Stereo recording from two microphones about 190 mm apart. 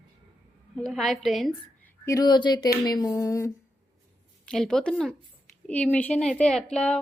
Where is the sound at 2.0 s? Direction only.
20° left (ahead or behind).